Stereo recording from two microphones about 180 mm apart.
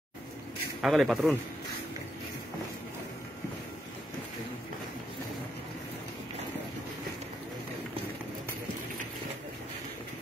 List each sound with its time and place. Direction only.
0.8 s speech: centre (ahead or behind)